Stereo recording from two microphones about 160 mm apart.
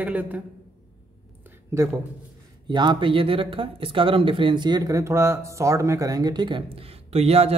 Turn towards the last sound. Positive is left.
turn(degrees=-40)  # may be behind; listen again after turning